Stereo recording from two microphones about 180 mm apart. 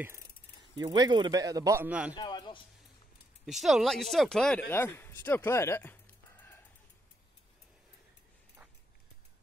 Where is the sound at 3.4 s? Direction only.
Centre (ahead or behind).